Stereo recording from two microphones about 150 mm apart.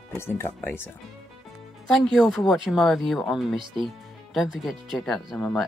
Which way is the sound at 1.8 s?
Centre (ahead or behind).